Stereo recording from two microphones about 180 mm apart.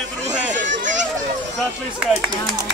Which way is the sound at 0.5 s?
45° right (ahead or behind).